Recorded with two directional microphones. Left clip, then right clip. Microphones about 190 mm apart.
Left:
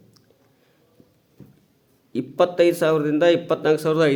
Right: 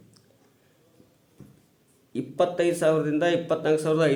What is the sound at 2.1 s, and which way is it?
A man's voice, 35° left (ahead or behind).